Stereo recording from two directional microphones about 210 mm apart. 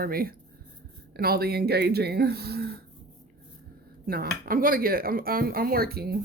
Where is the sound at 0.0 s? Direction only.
45° right (ahead or behind).